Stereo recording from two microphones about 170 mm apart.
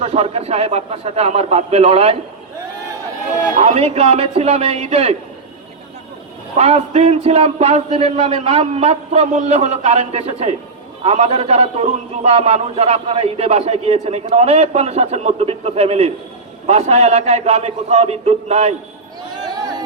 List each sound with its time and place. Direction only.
0.0 s a man's voice: 40° right (ahead or behind)
3.6 s a man's voice: 40° right (ahead or behind)
6.6 s a man's voice: 35° right (ahead or behind)